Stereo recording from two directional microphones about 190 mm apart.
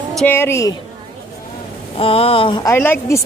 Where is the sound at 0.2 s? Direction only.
10° left (ahead or behind).